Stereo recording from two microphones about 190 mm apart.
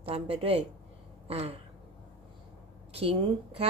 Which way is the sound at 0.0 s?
30° right (ahead or behind).